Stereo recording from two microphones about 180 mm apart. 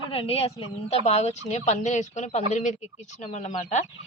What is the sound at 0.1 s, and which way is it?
Speech, 30° left (ahead or behind).